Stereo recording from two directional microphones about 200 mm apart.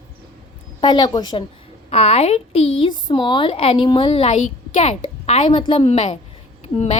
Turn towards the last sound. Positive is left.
turn(degrees=30)  # may be behind; listen again after turning